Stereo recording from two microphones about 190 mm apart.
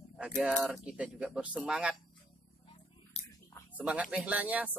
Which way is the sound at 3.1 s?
35° left (ahead or behind).